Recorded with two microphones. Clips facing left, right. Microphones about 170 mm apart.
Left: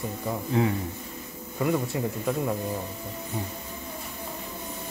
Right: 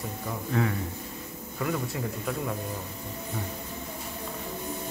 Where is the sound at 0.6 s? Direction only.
25° left (ahead or behind).